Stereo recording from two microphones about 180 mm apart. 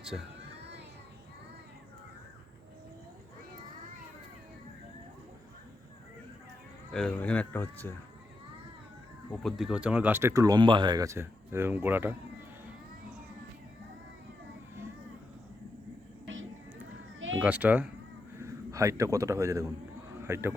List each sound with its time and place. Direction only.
0.1 s speech: 5° left (ahead or behind)
6.9 s speech: 5° left (ahead or behind)
9.4 s speech: centre (ahead or behind)
16.2 s music: 90° right
17.2 s cat: 90° right
17.4 s speech: 10° right (ahead or behind)